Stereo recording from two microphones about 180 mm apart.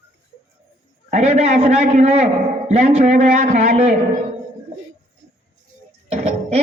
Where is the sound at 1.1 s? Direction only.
35° right (ahead or behind).